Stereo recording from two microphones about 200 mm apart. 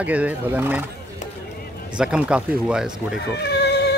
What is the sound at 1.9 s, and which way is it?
Speech, 5° right (ahead or behind).